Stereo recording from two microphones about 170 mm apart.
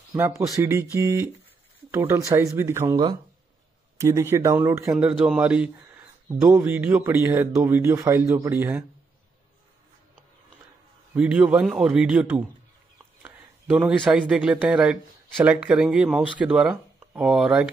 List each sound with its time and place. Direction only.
0.6 s speech: 15° right (ahead or behind)
11.1 s a man's voice: 10° right (ahead or behind)